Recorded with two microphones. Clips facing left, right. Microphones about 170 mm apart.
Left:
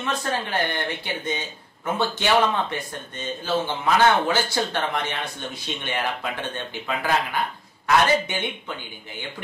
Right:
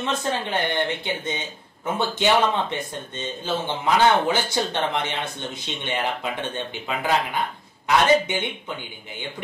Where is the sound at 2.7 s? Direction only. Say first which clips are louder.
Right 2 dB; 20° right (ahead or behind).